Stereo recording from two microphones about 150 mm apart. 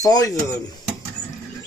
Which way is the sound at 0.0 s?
25° left (ahead or behind).